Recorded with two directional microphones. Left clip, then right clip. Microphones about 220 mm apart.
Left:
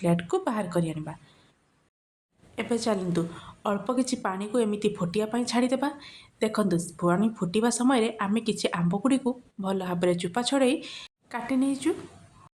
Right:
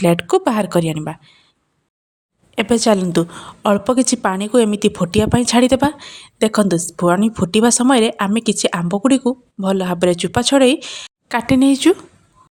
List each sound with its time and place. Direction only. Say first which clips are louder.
0.0 s a woman's voice: right 12 dB; 40° right (ahead or behind)
2.6 s a woman's voice: right 13 dB; 40° right (ahead or behind)